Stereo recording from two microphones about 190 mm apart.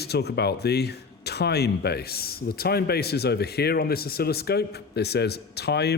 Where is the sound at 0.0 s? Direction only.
60° left (ahead or behind).